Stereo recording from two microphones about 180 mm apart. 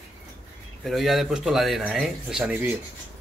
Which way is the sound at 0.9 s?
Centre (ahead or behind).